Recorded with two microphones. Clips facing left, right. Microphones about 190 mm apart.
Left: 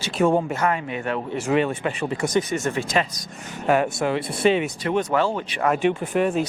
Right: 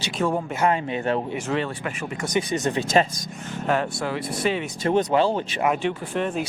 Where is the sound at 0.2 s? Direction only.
5° left (ahead or behind).